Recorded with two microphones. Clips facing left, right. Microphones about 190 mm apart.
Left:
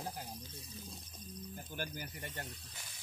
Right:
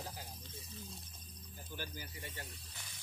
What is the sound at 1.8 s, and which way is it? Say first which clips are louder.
Speech: left 3 dB; 55° left (ahead or behind).